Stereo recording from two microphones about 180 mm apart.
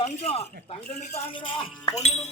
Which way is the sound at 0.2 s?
35° left (ahead or behind).